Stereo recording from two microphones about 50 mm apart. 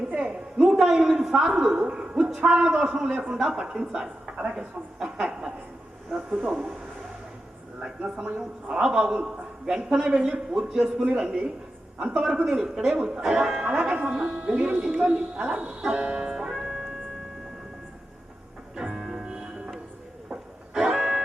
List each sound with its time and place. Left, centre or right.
0.2 s a sound: centre
0.8 s a man's voice: centre
1.2 s a sound: centre
1.5 s a man's voice: centre
5.0 s chuckle: centre
6.1 s speech: centre
7.8 s a man's voice: centre
14.7 s music: centre
18.9 s music: centre